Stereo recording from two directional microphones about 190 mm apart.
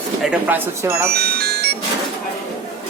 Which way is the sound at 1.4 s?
55° right (ahead or behind).